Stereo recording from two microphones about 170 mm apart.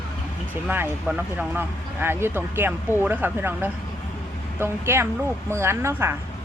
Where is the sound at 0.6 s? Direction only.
5° right (ahead or behind).